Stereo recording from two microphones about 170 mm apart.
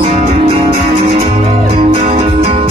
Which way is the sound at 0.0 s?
45° right (ahead or behind).